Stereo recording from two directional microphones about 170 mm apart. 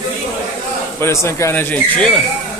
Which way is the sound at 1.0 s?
15° left (ahead or behind).